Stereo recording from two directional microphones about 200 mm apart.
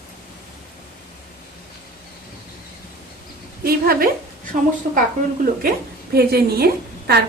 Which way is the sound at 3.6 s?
50° right (ahead or behind).